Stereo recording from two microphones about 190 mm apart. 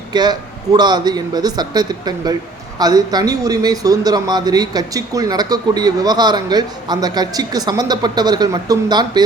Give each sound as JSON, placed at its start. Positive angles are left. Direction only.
{"t": 0.1, "sound": "speech", "side_deg": -20}